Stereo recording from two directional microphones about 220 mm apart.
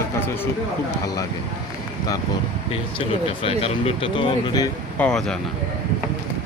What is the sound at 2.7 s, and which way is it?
Speech, 25° left (ahead or behind).